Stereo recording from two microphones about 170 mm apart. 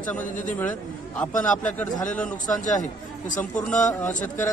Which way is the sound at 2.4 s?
50° left (ahead or behind).